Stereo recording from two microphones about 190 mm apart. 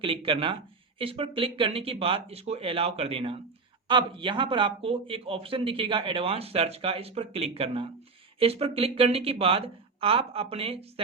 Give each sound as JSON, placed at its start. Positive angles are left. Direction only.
{"t": 0.0, "sound": "speech", "side_deg": -25}